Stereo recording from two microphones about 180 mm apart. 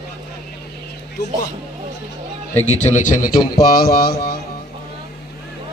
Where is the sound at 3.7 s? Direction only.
60° left (ahead or behind).